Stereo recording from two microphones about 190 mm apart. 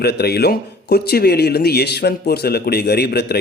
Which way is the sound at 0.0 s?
55° left (ahead or behind).